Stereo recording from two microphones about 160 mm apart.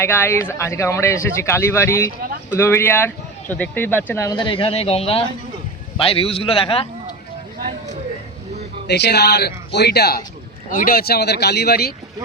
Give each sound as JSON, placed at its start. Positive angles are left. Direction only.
{"t": 0.0, "sound": "speech", "side_deg": 15}
{"t": 4.3, "sound": "speech", "side_deg": 30}
{"t": 8.9, "sound": "speech", "side_deg": 90}
{"t": 10.7, "sound": "speech", "side_deg": 60}